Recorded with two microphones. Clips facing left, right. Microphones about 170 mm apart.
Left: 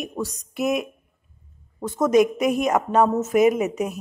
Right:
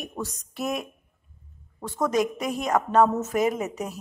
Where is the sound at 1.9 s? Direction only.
20° left (ahead or behind).